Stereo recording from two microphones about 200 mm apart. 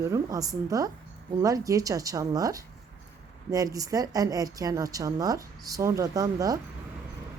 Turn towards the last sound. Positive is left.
turn(degrees=-15)  # may be behind; listen again after turning